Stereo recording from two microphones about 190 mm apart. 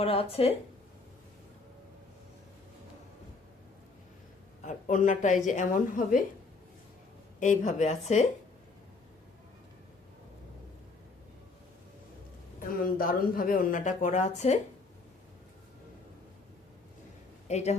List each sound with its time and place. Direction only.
0.0 s a woman's voice: 30° left (ahead or behind)
4.6 s a woman's voice: 40° left (ahead or behind)
7.3 s a woman's voice: 40° left (ahead or behind)
12.5 s speech: 50° left (ahead or behind)
17.5 s a woman's voice: 35° left (ahead or behind)